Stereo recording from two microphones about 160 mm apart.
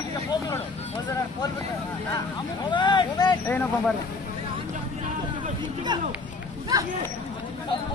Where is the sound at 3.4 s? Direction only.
10° left (ahead or behind).